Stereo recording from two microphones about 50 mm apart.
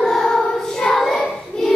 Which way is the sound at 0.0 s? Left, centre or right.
Centre.